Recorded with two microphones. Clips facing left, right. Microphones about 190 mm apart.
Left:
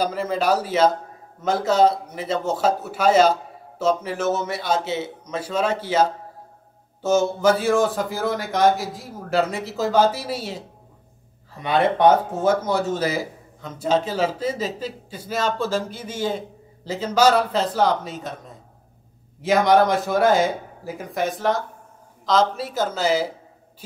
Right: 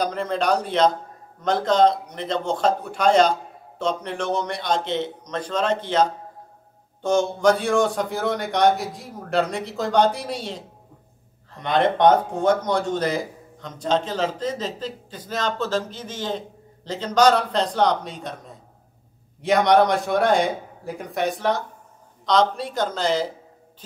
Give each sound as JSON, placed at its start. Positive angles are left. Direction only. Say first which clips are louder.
{"t": 0.0, "sound": "a man's voice", "louder": "left 1 dB", "side_deg": 5}